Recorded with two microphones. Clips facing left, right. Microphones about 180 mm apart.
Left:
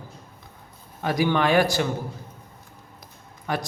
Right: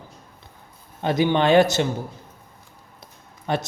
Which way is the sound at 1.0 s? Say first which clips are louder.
Right 2 dB; 25° right (ahead or behind).